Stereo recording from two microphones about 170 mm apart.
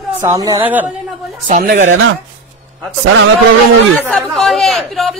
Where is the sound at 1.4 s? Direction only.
45° right (ahead or behind).